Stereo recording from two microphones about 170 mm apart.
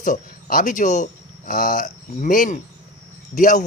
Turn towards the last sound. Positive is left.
turn(degrees=45)  # may be behind; listen again after turning